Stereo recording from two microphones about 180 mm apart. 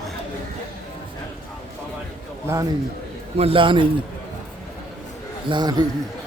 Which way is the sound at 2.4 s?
15° right (ahead or behind).